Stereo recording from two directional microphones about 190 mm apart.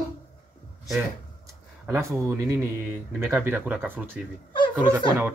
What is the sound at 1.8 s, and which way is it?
Speech, 15° right (ahead or behind).